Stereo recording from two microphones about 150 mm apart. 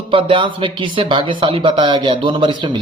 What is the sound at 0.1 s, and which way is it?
A man's voice, 35° right (ahead or behind).